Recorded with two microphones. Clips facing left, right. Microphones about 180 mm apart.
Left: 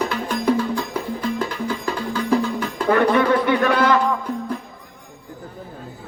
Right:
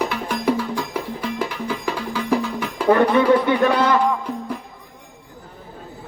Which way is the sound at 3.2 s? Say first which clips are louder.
Right 2 dB; 15° right (ahead or behind).